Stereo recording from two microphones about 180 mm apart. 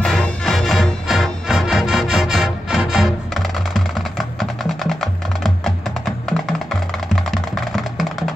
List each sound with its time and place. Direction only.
0.0 s music: 5° left (ahead or behind)